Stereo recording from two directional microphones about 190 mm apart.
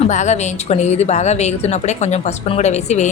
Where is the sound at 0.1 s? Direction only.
40° left (ahead or behind).